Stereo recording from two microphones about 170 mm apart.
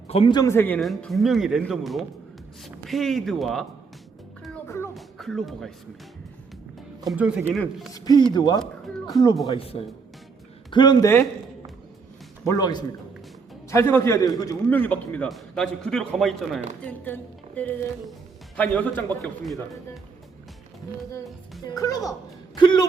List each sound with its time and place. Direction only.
0.1 s speech: 30° left (ahead or behind)
0.5 s a woman's voice: 10° left (ahead or behind)
0.8 s a man's voice: centre (ahead or behind)
4.6 s music: 15° left (ahead or behind)
4.9 s speech: centre (ahead or behind)
7.1 s a man's voice: 5° right (ahead or behind)
7.9 s speech: 20° left (ahead or behind)
8.9 s a man's voice: centre (ahead or behind)
9.6 s speech: 35° left (ahead or behind); by 11.3 s 15° left (ahead or behind)
12.5 s a woman's voice: 25° left (ahead or behind)
14.7 s a man's voice: 10° left (ahead or behind)
21.6 s a woman's voice: 20° left (ahead or behind)